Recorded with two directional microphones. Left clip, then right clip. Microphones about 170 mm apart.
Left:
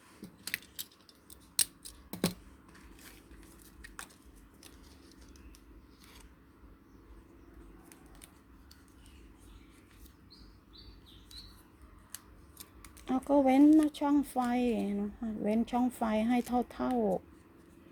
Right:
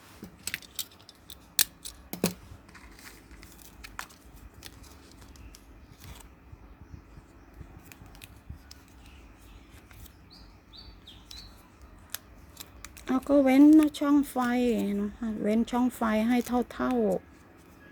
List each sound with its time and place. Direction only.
0.5 s keys jangling: 15° left (ahead or behind)
1.3 s scissors: 15° right (ahead or behind)
12.1 s scissors: 15° right (ahead or behind)
13.7 s speech: 10° right (ahead or behind)